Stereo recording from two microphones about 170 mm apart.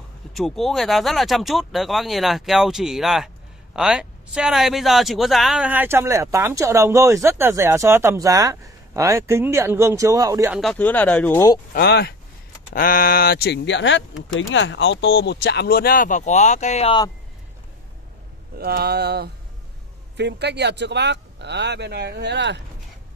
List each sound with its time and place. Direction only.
0.3 s speech: centre (ahead or behind); by 10.5 s 20° right (ahead or behind)
10.5 s speech: centre (ahead or behind); by 11.6 s 15° left (ahead or behind)
11.7 s speech: 75° left (ahead or behind)
12.7 s speech: 55° left (ahead or behind); by 16.9 s 40° left (ahead or behind)
18.6 s a sound: 65° right (ahead or behind)
20.2 s speech: 85° right